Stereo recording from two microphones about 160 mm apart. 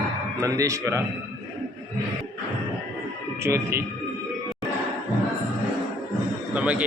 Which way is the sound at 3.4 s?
15° right (ahead or behind).